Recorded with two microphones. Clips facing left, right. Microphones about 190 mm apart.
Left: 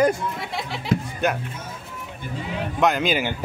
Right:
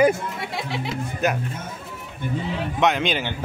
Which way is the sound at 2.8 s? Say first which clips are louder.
Left 1 dB; centre (ahead or behind).